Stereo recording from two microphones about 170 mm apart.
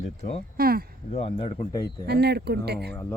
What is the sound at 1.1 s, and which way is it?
Speech, 35° left (ahead or behind).